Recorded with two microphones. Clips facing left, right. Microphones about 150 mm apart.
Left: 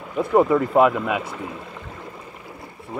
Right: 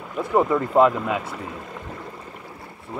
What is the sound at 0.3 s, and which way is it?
Speech, 5° left (ahead or behind).